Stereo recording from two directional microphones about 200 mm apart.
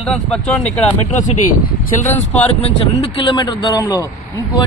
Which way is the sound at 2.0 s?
30° left (ahead or behind).